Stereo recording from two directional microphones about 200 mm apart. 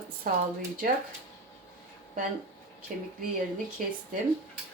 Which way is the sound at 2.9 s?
40° right (ahead or behind).